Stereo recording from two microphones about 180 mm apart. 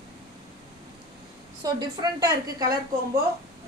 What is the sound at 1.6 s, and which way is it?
A woman's voice, 20° right (ahead or behind).